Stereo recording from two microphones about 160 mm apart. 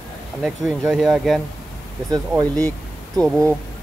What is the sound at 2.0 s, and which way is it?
Speech, 25° right (ahead or behind).